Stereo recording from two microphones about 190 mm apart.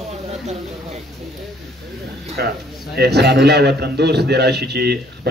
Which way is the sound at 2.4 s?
55° right (ahead or behind).